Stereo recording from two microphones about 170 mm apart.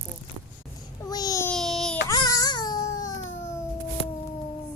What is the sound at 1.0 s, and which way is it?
Speech, 20° left (ahead or behind).